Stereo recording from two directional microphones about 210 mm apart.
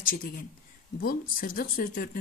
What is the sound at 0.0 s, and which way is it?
Speech, 40° left (ahead or behind).